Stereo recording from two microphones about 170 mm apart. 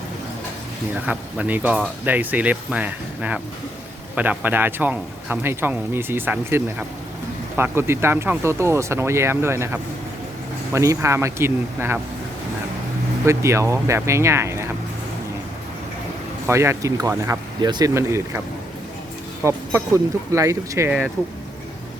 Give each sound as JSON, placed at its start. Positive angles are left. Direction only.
{"t": 1.0, "sound": "a man's voice", "side_deg": -10}
{"t": 13.2, "sound": "a man's voice", "side_deg": -15}
{"t": 16.5, "sound": "a man's voice", "side_deg": -15}